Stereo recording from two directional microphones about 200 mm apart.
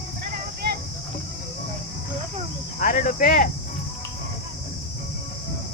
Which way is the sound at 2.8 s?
40° left (ahead or behind).